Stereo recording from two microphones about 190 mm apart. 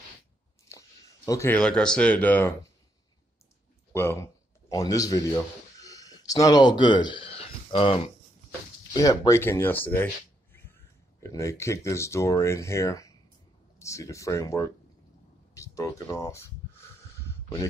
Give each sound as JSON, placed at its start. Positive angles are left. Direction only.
{"t": 0.7, "sound": "speech", "side_deg": 15}
{"t": 3.9, "sound": "a man's voice", "side_deg": 10}
{"t": 10.5, "sound": "finger snapping", "side_deg": 10}
{"t": 11.2, "sound": "speech", "side_deg": 15}